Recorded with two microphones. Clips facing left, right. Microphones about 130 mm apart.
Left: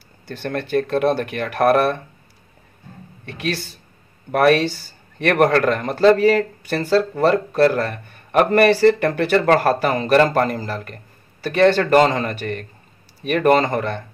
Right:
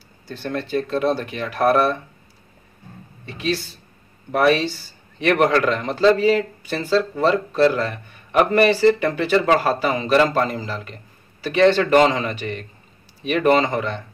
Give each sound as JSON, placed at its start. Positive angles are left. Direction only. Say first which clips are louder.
{"t": 0.3, "sound": "speech", "louder": "left 2 dB", "side_deg": 60}
{"t": 3.3, "sound": "a man's voice", "louder": "right 1 dB", "side_deg": 60}